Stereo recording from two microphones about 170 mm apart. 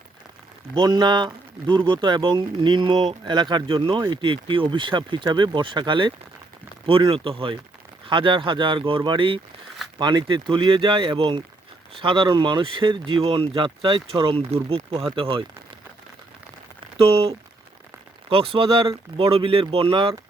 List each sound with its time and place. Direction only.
0.7 s speech: 25° right (ahead or behind)
17.0 s speech: 35° right (ahead or behind)